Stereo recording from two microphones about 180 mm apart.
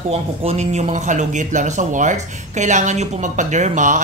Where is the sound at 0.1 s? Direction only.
35° right (ahead or behind).